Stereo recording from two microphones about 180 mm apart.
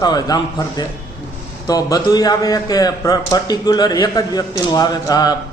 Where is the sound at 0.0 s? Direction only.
20° left (ahead or behind).